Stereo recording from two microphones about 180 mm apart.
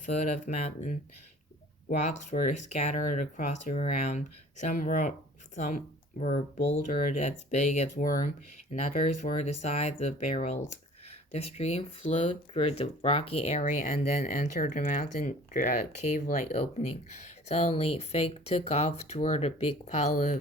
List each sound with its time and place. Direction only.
0.0 s speech: 45° left (ahead or behind)